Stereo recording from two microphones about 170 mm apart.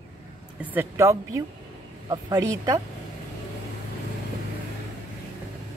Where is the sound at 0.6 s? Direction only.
10° right (ahead or behind).